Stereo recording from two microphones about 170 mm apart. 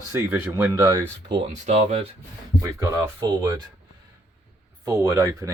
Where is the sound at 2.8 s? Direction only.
20° right (ahead or behind).